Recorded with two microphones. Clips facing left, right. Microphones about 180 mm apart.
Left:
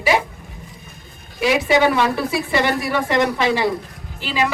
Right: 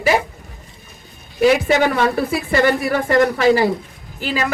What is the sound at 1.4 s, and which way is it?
Speech, 45° right (ahead or behind).